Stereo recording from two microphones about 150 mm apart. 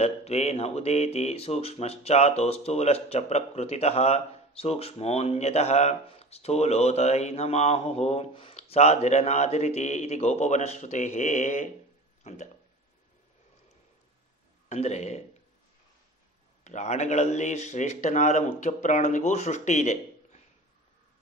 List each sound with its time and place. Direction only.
0.0 s speech: 45° left (ahead or behind)
14.7 s speech: 50° left (ahead or behind)
16.6 s speech: 50° left (ahead or behind)